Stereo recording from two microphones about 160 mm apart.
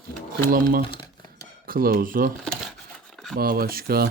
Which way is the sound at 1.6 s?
65° right (ahead or behind).